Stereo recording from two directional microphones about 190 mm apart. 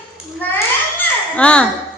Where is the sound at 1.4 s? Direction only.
5° left (ahead or behind).